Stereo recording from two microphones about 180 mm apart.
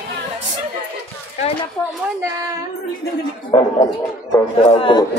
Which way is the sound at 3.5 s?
30° left (ahead or behind).